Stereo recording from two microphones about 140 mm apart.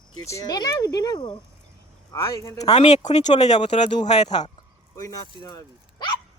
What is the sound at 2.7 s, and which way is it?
Speech, 55° left (ahead or behind).